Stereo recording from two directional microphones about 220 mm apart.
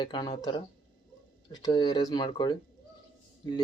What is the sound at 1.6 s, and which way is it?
Speech, 20° left (ahead or behind).